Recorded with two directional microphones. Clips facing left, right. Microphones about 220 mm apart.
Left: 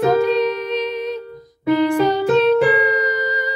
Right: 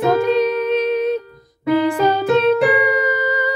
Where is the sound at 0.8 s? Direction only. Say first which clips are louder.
Right 6 dB; 55° right (ahead or behind).